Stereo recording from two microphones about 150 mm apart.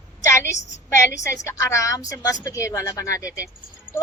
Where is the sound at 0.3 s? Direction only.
15° left (ahead or behind).